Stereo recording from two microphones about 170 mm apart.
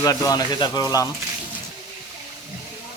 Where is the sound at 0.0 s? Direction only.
20° left (ahead or behind).